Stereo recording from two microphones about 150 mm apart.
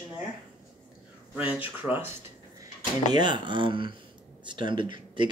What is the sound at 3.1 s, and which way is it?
Speech, 30° right (ahead or behind).